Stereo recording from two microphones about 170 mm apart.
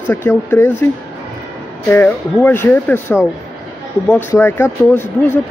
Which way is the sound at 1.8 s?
10° left (ahead or behind).